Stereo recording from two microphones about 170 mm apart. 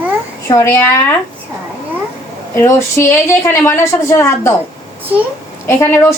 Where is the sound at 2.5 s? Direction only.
15° left (ahead or behind).